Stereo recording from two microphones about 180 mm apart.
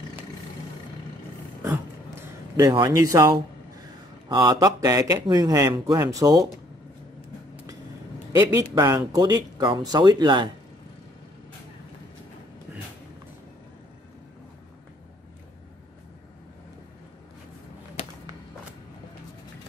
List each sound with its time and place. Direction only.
1.6 s a sound: 15° right (ahead or behind)
4.3 s speech: 20° right (ahead or behind)
8.7 s speech: 20° right (ahead or behind)
18.0 s walk: 35° left (ahead or behind)